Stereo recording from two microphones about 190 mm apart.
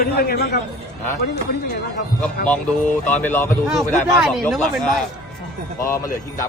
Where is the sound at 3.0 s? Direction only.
10° left (ahead or behind).